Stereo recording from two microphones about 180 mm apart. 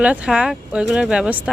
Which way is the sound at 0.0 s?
5° right (ahead or behind).